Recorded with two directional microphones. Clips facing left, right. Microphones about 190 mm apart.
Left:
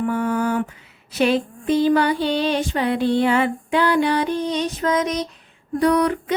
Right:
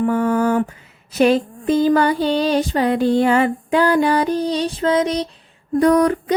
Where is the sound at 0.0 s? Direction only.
40° right (ahead or behind).